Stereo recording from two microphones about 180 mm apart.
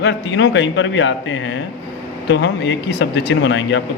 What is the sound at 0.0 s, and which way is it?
A man's voice, 90° left.